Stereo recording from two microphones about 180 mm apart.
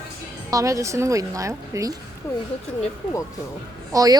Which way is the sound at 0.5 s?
15° right (ahead or behind).